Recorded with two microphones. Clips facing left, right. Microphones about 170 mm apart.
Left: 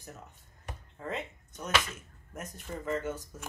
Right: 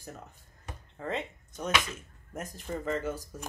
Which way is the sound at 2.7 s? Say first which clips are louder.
Right 1 dB; 35° right (ahead or behind).